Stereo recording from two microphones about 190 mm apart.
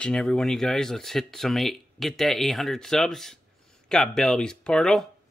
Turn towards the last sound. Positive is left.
turn(degrees=5)  # may be behind; listen again after turning